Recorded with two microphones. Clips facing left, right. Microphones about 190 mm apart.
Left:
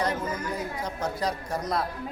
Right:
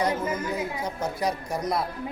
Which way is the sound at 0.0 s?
10° right (ahead or behind).